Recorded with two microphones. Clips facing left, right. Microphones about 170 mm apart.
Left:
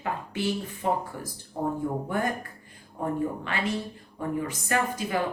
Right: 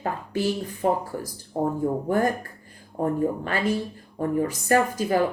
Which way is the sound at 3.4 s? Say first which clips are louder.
Right 5 dB; 40° right (ahead or behind).